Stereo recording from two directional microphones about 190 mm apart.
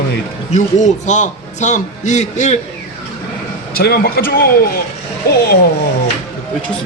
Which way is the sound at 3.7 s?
55° left (ahead or behind).